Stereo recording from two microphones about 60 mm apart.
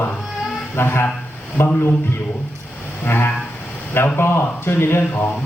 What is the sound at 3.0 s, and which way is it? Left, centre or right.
Speech, left.